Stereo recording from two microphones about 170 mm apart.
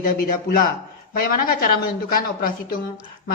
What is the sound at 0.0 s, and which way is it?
A woman's voice, 55° left (ahead or behind).